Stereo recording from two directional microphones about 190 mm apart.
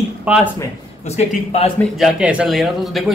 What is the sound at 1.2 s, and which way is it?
Speech, 30° left (ahead or behind).